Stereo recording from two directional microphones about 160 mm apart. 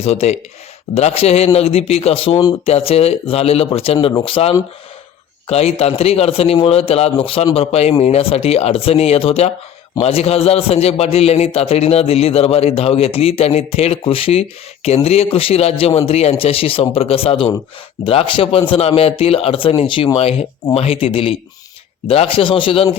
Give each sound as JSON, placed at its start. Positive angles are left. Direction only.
{"t": 0.0, "sound": "a man's voice", "side_deg": 40}